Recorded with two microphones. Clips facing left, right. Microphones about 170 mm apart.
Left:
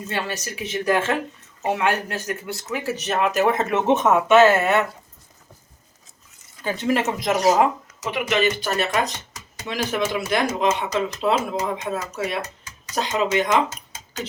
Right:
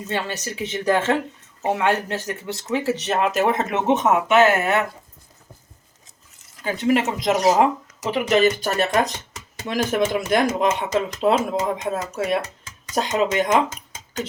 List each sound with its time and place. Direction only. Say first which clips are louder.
0.1 s speech: right 2 dB; 20° right (ahead or behind)
6.6 s speech: right 2 dB; 15° right (ahead or behind)
8.1 s speech: right 4 dB; 40° right (ahead or behind)